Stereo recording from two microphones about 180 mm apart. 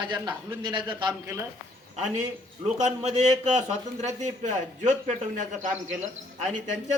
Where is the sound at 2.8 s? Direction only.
40° right (ahead or behind).